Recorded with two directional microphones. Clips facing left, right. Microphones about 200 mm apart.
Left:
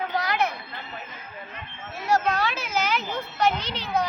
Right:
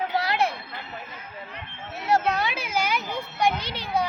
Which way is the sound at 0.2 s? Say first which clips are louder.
Even; 30° right (ahead or behind).